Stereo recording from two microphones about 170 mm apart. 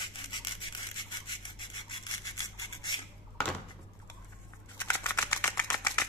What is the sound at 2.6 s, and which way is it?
Rub, 25° left (ahead or behind).